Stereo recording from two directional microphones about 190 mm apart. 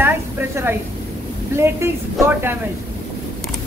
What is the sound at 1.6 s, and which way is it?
Speech, 15° right (ahead or behind).